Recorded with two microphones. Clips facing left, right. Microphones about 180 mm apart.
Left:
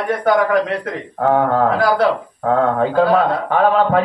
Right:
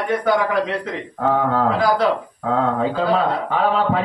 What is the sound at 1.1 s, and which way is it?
A man's voice, 55° left (ahead or behind).